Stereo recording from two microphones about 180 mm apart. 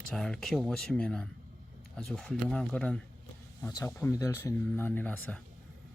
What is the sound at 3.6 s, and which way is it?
Speech, 15° left (ahead or behind).